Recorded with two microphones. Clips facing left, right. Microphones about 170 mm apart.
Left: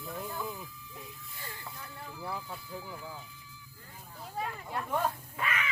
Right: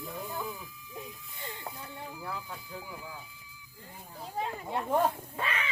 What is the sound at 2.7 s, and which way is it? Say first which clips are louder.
Speech: left 1 dB; 15° right (ahead or behind).